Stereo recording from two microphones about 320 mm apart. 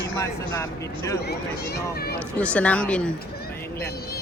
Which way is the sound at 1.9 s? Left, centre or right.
Left.